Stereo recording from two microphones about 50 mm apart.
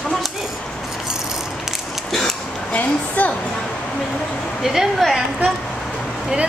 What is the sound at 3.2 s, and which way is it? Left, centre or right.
Music, left.